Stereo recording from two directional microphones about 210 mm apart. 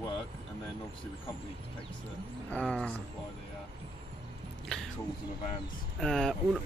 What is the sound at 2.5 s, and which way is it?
Speech, 5° left (ahead or behind).